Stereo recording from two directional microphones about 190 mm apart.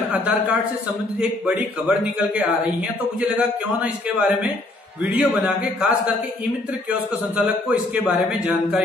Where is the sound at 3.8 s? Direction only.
5° right (ahead or behind).